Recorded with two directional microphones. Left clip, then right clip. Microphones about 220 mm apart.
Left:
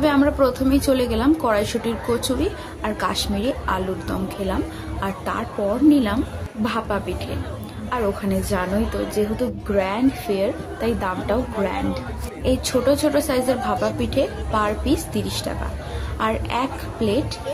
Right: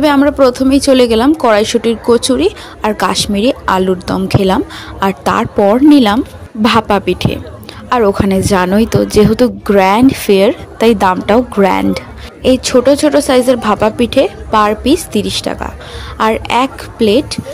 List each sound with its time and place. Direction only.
0.0 s a woman's voice: 40° right (ahead or behind)